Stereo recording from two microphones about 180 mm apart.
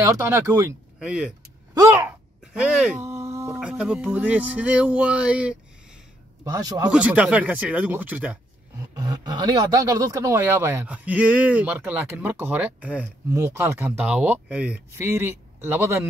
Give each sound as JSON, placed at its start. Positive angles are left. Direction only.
{"t": 0.0, "sound": "speech", "side_deg": -15}
{"t": 0.9, "sound": "vehicle", "side_deg": -5}
{"t": 1.8, "sound": "a sound", "side_deg": -15}
{"t": 2.4, "sound": "a sound", "side_deg": -5}
{"t": 3.5, "sound": "speech", "side_deg": -5}
{"t": 6.4, "sound": "a man's voice", "side_deg": -20}
{"t": 6.9, "sound": "speech", "side_deg": -5}
{"t": 8.9, "sound": "speech", "side_deg": -20}